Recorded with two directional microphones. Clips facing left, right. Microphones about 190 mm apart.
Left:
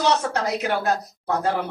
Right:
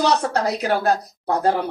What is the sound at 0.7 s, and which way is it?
Speech, 35° right (ahead or behind).